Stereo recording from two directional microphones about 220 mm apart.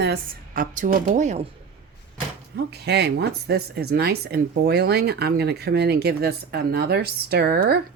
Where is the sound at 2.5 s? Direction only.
50° right (ahead or behind).